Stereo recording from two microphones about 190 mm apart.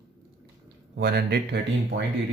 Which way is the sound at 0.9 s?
60° right (ahead or behind).